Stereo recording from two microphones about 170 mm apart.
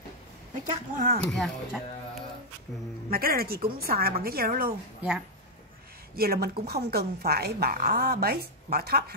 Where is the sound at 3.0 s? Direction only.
60° right (ahead or behind).